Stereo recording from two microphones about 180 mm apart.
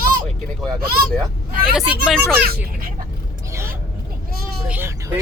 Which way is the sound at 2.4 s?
55° right (ahead or behind).